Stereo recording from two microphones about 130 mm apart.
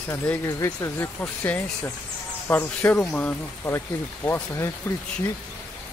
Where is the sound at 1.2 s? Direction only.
10° left (ahead or behind).